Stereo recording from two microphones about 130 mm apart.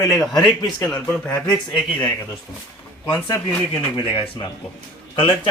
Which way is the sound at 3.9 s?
45° left (ahead or behind).